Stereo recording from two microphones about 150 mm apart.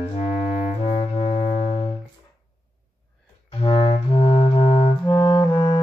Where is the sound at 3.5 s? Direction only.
35° left (ahead or behind).